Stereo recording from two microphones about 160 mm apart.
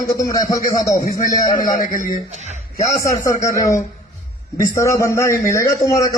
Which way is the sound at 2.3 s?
45° right (ahead or behind).